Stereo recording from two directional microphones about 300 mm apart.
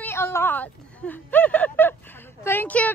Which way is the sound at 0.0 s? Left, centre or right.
Centre.